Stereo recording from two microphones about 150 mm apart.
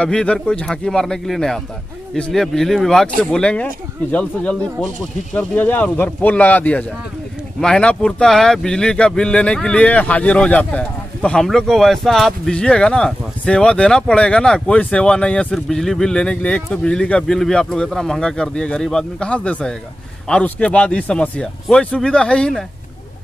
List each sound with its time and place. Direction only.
0.0 s a man's voice: 5° left (ahead or behind)